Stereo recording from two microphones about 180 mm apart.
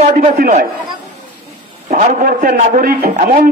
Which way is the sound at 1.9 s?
45° right (ahead or behind).